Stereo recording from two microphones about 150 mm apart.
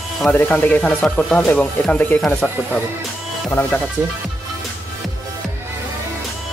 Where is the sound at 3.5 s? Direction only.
15° left (ahead or behind).